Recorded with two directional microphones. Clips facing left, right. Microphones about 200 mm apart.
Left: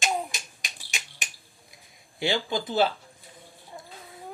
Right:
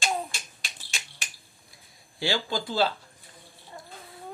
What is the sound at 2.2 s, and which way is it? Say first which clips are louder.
Speech: left 2 dB; 20° left (ahead or behind).